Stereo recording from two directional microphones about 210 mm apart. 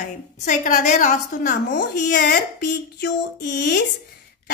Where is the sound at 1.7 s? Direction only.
55° left (ahead or behind).